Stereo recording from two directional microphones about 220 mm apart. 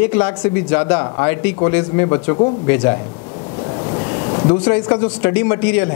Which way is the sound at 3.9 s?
25° left (ahead or behind).